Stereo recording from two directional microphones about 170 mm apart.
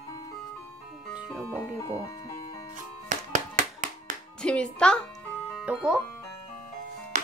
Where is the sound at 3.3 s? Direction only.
50° right (ahead or behind).